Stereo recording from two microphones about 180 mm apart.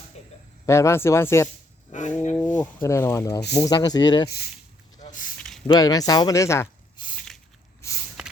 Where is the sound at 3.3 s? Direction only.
65° left (ahead or behind).